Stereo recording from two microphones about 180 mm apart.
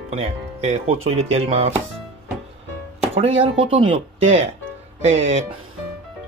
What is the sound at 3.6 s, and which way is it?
Speech, 30° right (ahead or behind).